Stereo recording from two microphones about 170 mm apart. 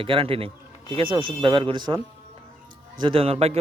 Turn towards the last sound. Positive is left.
turn(degrees=-40)  # may be behind; listen again after turning